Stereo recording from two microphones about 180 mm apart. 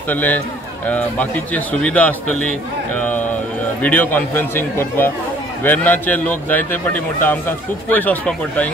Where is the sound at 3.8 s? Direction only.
10° left (ahead or behind).